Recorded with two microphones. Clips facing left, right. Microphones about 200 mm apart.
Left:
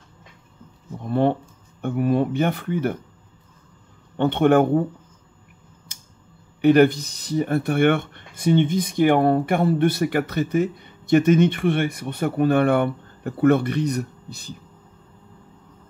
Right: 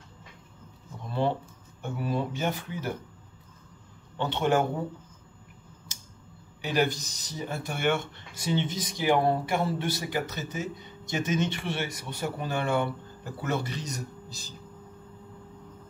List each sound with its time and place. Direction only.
1.0 s speech: 55° left (ahead or behind)
4.2 s speech: 55° left (ahead or behind)
5.9 s scissors: 55° left (ahead or behind)
6.6 s speech: 60° left (ahead or behind)